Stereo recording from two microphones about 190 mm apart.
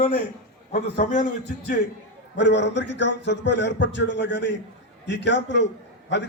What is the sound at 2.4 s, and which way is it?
A man's voice, 65° left (ahead or behind).